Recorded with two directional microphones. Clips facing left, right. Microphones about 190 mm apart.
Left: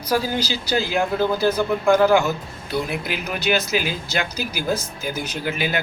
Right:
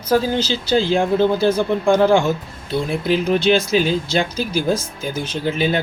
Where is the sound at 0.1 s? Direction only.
25° right (ahead or behind).